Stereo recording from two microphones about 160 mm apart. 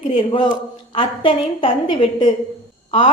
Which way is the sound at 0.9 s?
35° left (ahead or behind).